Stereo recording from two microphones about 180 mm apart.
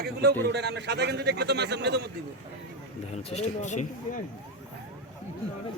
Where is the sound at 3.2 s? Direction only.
40° left (ahead or behind).